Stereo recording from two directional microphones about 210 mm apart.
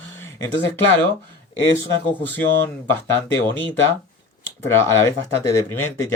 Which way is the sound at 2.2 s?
10° left (ahead or behind).